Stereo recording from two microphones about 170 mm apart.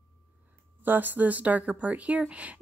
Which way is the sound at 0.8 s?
10° right (ahead or behind).